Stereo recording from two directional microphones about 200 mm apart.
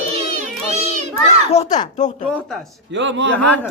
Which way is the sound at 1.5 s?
35° left (ahead or behind).